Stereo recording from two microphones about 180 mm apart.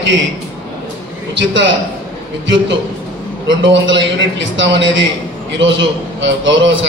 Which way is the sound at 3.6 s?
85° right.